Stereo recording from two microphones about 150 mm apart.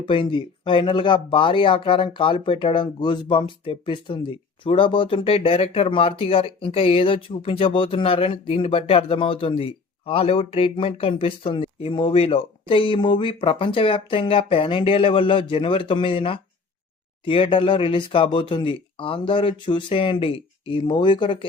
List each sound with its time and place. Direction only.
0.0 s speech: 35° left (ahead or behind)